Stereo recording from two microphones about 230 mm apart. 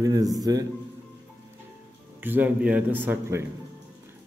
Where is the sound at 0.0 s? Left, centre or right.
Centre.